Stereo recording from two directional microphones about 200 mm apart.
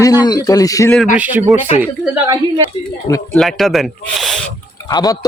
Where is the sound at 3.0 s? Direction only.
15° left (ahead or behind).